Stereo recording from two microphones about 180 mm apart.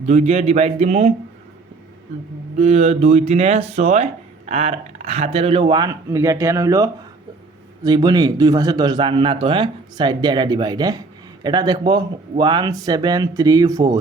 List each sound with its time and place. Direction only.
0.0 s speech: 40° right (ahead or behind)
2.6 s a man's voice: 40° right (ahead or behind); by 14.0 s 20° right (ahead or behind)